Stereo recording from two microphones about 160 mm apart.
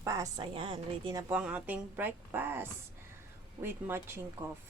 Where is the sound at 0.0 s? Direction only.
20° right (ahead or behind).